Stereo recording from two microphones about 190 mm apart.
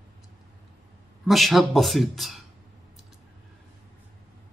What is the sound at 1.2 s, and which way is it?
Speech, centre (ahead or behind).